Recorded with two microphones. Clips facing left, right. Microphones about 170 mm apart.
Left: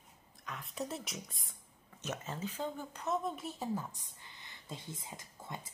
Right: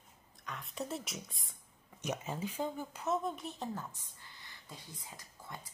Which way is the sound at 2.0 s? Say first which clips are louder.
Right 2 dB; 15° right (ahead or behind).